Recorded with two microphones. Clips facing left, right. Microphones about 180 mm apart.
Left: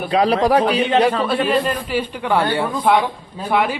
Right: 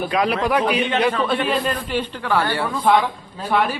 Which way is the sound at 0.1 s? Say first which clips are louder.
Left 6 dB; 35° left (ahead or behind).